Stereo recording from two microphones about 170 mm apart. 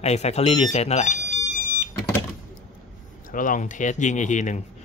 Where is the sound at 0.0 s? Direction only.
40° left (ahead or behind).